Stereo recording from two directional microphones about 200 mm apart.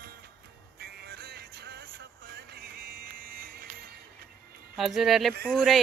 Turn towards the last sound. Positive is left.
turn(degrees=0)  # may be behind; listen again after turning